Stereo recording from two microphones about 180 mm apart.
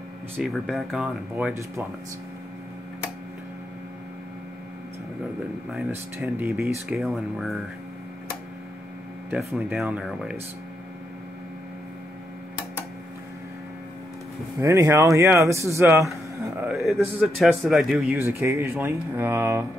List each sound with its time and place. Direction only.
0.4 s a man's voice: centre (ahead or behind)
1.5 s speech: 15° right (ahead or behind)
5.7 s speech: 10° right (ahead or behind)
9.3 s a man's voice: 10° right (ahead or behind)
14.6 s a man's voice: 15° right (ahead or behind)
18.1 s speech: 15° right (ahead or behind)